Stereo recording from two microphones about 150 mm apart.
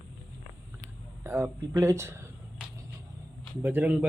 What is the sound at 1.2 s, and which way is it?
Speech, 20° right (ahead or behind).